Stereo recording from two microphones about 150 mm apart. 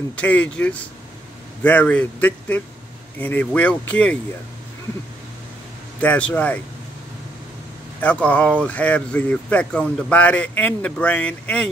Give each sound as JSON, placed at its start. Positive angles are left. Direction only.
{"t": 0.1, "sound": "speech", "side_deg": 10}
{"t": 5.9, "sound": "speech", "side_deg": 10}
{"t": 8.0, "sound": "speech", "side_deg": 10}